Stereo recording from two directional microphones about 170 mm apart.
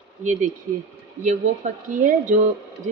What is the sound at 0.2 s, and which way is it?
Speech, 45° right (ahead or behind).